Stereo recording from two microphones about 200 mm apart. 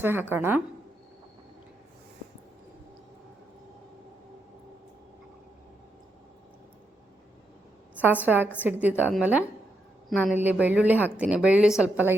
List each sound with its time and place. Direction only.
0.0 s a woman's voice: 10° right (ahead or behind)
8.0 s a woman's voice: 10° right (ahead or behind)
10.1 s a woman's voice: centre (ahead or behind)